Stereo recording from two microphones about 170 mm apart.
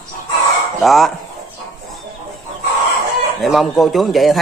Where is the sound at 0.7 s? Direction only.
Centre (ahead or behind).